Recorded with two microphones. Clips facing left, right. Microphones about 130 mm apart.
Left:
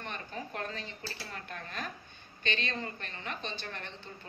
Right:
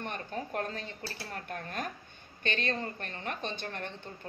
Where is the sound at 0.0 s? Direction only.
45° right (ahead or behind).